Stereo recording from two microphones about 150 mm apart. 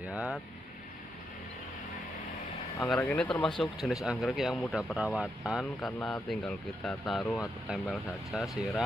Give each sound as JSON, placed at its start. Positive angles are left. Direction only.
{"t": 0.0, "sound": "speech", "side_deg": -10}
{"t": 3.0, "sound": "speech", "side_deg": 10}